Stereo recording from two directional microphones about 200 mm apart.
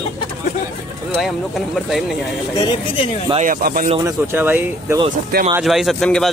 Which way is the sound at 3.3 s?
40° right (ahead or behind).